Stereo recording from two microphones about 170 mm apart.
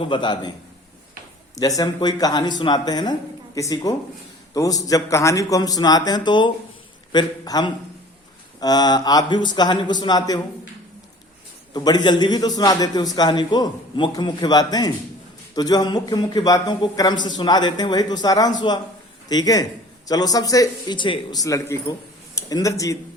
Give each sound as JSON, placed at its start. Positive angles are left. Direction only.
{"t": 0.1, "sound": "a man's voice", "side_deg": 25}
{"t": 1.5, "sound": "a man's voice", "side_deg": 20}
{"t": 11.7, "sound": "a man's voice", "side_deg": 25}